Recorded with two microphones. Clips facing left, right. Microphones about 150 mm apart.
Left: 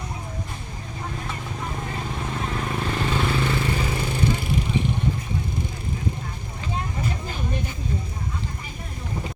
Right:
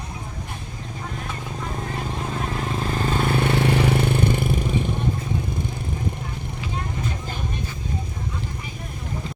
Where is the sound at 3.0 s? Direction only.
45° right (ahead or behind).